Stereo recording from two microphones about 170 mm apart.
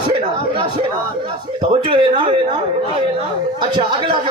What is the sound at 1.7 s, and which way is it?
Speech, 30° right (ahead or behind).